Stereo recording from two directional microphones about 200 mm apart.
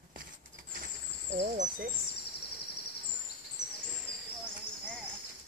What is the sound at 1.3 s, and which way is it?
Insect, 35° right (ahead or behind).